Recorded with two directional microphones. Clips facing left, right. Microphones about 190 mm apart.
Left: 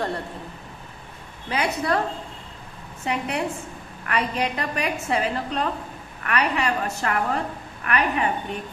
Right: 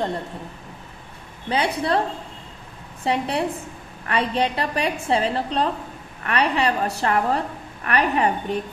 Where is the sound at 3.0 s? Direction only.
30° right (ahead or behind).